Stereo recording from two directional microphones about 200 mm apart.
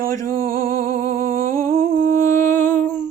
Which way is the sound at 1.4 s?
15° left (ahead or behind).